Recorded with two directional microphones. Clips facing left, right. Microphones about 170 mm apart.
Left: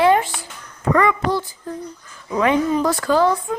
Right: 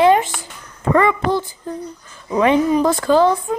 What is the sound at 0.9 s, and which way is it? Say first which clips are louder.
Speech: right 2 dB; 25° right (ahead or behind).